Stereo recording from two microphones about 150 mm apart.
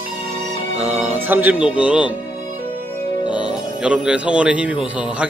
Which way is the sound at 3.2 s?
30° left (ahead or behind).